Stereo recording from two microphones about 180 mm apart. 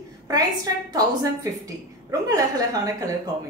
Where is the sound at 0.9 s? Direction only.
20° right (ahead or behind).